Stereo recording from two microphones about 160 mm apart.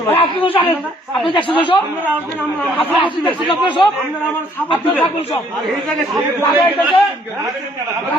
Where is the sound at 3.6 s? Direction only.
30° left (ahead or behind).